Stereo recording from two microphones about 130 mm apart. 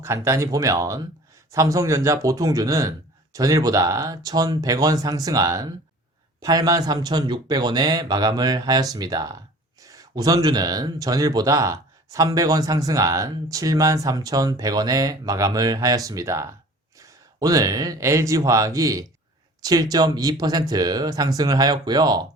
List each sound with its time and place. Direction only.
0.0 s speech: 20° right (ahead or behind)